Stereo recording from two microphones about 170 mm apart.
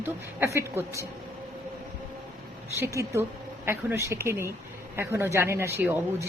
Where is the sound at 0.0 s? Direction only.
15° right (ahead or behind).